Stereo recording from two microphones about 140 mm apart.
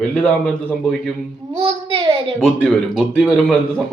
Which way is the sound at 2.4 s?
Centre (ahead or behind).